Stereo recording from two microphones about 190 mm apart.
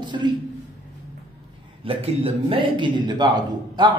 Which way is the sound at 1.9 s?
30° right (ahead or behind).